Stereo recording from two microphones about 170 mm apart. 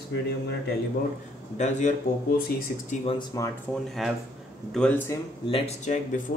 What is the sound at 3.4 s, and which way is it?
Speech, 20° left (ahead or behind).